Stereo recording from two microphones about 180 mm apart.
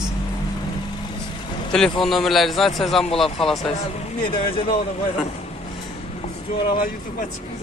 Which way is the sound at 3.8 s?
35° left (ahead or behind).